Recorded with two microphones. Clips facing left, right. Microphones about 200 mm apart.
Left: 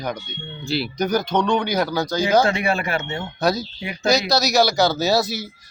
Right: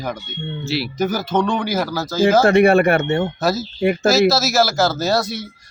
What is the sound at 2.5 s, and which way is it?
Speech, 55° right (ahead or behind).